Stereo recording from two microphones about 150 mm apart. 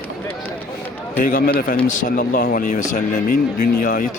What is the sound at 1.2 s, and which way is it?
Speech, 65° left (ahead or behind).